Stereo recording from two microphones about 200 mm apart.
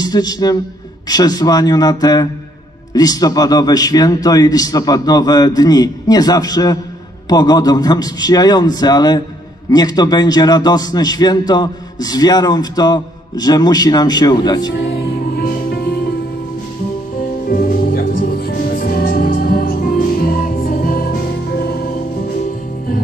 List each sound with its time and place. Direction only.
0.0 s a man's voice: 20° left (ahead or behind)
14.8 s music: 55° left (ahead or behind)
17.5 s music: 45° left (ahead or behind)